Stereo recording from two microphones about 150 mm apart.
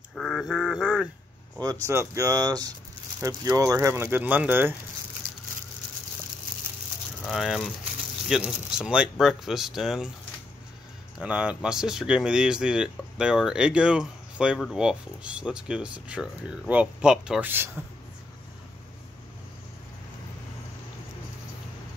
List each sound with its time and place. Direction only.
0.1 s a sound: centre (ahead or behind)
1.6 s speech: 20° right (ahead or behind)
7.2 s speech: centre (ahead or behind)
11.1 s speech: 5° right (ahead or behind)